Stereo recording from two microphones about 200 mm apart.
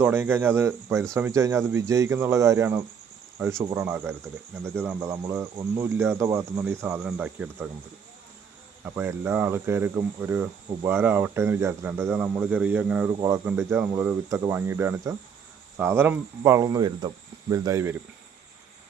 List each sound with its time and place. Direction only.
0.0 s cricket: 10° right (ahead or behind)
8.8 s cricket: 10° right (ahead or behind)